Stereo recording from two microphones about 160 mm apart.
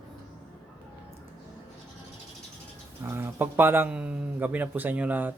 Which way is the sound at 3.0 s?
15° right (ahead or behind).